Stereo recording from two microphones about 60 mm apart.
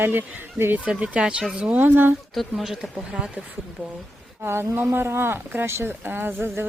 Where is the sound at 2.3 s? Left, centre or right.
Centre.